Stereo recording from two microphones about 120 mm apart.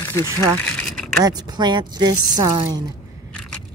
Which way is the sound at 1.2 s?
35° right (ahead or behind).